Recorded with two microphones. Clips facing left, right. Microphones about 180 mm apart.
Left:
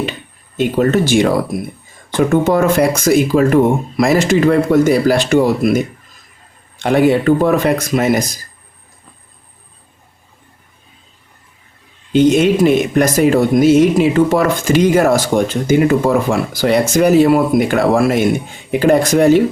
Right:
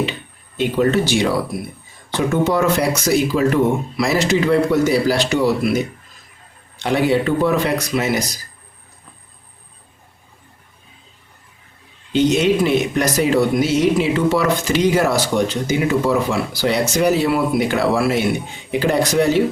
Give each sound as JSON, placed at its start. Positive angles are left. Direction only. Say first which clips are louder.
{"t": 0.5, "sound": "speech", "louder": "left 3 dB", "side_deg": 45}
{"t": 12.1, "sound": "speech", "louder": "left 4 dB", "side_deg": 50}